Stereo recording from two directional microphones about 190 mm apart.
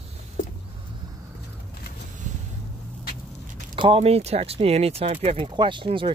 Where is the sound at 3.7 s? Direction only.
25° right (ahead or behind).